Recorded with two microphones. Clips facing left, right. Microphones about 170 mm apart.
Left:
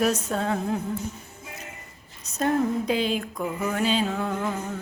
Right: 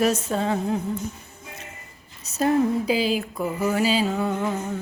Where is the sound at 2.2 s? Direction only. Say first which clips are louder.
Right 3 dB; 5° right (ahead or behind).